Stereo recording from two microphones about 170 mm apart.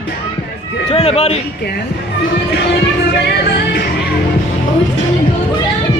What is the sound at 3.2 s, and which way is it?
Music, 70° left (ahead or behind).